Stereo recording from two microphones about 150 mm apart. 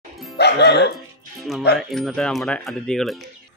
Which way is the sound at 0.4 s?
90° left.